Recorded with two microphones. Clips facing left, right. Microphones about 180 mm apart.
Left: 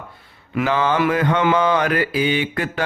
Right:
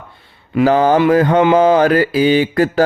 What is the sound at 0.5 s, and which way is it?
Mantra, 35° right (ahead or behind).